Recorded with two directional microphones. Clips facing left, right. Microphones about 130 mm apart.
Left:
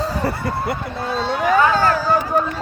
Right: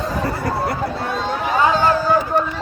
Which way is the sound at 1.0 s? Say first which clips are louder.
Left 2 dB; 50° right (ahead or behind).